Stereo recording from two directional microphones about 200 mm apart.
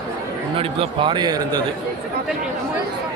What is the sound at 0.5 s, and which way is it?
Speech, 25° right (ahead or behind).